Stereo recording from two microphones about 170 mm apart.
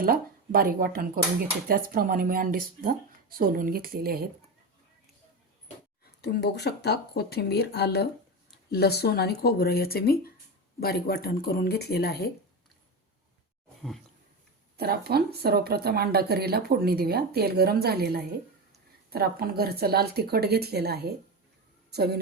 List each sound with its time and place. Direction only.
0.0 s speech: 60° right (ahead or behind)
6.2 s speech: 75° left (ahead or behind)
14.8 s speech: 65° right (ahead or behind)